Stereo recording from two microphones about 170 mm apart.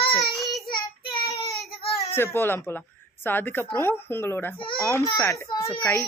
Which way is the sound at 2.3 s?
15° left (ahead or behind).